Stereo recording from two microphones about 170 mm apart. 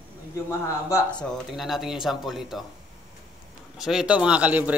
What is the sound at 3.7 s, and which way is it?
Speech, 5° right (ahead or behind).